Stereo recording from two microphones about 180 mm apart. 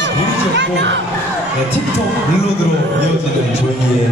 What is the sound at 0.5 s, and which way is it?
Speech, 80° right.